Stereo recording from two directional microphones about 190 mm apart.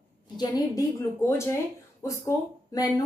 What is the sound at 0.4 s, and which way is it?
A woman's voice, 20° left (ahead or behind).